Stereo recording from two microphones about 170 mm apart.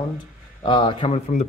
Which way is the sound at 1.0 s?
40° left (ahead or behind).